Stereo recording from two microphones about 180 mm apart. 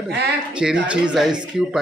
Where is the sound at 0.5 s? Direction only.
5° right (ahead or behind).